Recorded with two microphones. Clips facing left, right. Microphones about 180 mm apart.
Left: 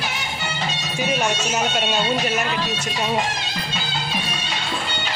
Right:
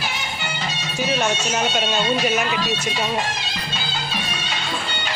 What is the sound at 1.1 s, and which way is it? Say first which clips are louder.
Speech: right 1 dB; 10° left (ahead or behind).